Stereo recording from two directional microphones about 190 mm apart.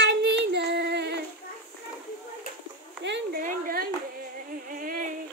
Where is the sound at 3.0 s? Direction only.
65° right (ahead or behind).